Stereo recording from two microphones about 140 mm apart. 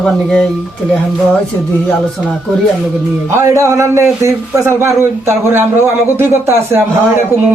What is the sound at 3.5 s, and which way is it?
A man's voice, 20° right (ahead or behind).